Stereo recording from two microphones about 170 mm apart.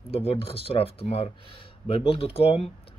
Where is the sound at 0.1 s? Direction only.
35° left (ahead or behind).